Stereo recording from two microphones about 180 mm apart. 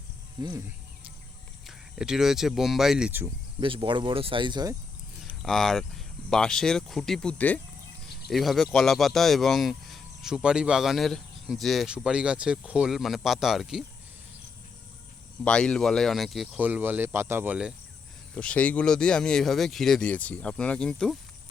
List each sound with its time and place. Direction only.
0.4 s speech: 25° right (ahead or behind)
1.6 s speech: 5° right (ahead or behind)
3.6 s speech: 30° right (ahead or behind)
5.2 s a sound: centre (ahead or behind)
6.3 s speech: 5° left (ahead or behind)
15.4 s speech: 5° left (ahead or behind)
18.3 s speech: 5° left (ahead or behind)